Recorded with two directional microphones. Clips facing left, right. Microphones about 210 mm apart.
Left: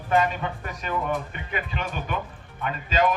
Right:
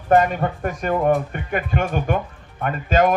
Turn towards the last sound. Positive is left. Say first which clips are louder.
# right 6 dB
turn(degrees=-50)  # may be behind; listen again after turning